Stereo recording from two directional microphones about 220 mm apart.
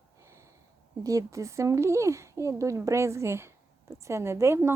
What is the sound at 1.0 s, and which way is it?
Speech, 15° right (ahead or behind).